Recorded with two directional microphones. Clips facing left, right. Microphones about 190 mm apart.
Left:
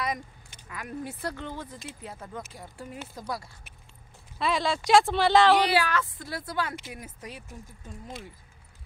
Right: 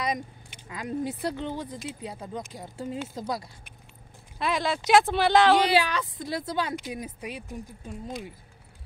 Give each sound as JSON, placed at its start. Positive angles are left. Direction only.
{"t": 0.7, "sound": "speech", "side_deg": -20}
{"t": 4.4, "sound": "speech", "side_deg": 0}
{"t": 5.7, "sound": "speech", "side_deg": -20}